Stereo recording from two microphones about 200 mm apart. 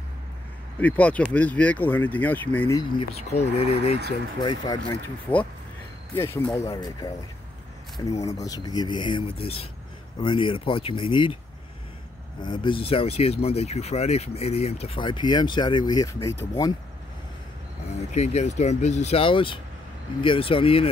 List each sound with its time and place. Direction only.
0.7 s speech: 5° left (ahead or behind)
3.5 s speech: 30° left (ahead or behind)
5.3 s speech: 10° left (ahead or behind); by 11.3 s 25° left (ahead or behind)
12.4 s speech: 25° left (ahead or behind)
18.1 s speech: 35° left (ahead or behind)